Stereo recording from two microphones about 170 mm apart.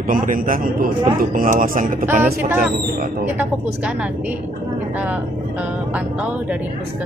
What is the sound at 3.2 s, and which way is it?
Speech, 10° right (ahead or behind).